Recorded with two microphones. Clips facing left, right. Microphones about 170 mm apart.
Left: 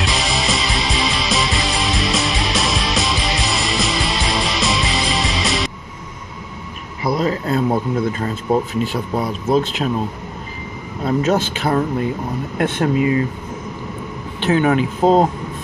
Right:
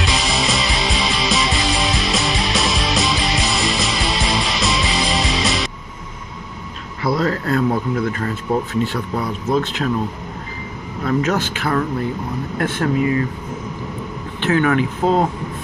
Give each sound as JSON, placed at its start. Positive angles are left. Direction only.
{"t": 0.0, "sound": "music", "side_deg": 0}
{"t": 7.0, "sound": "speech", "side_deg": 15}
{"t": 11.1, "sound": "speech", "side_deg": 25}
{"t": 14.4, "sound": "speech", "side_deg": 20}